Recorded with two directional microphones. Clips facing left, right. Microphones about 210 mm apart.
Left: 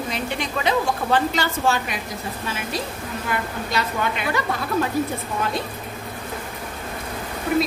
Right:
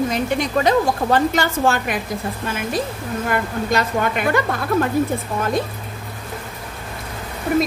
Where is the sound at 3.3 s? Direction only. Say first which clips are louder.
Right 6 dB; 50° right (ahead or behind).